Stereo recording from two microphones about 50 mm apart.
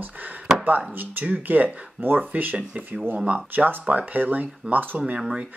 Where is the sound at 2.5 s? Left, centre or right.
Right.